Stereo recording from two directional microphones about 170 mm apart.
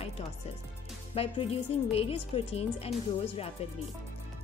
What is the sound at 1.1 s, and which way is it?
A woman's voice, 35° left (ahead or behind).